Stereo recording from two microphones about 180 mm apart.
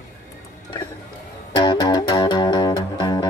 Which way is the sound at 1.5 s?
25° left (ahead or behind).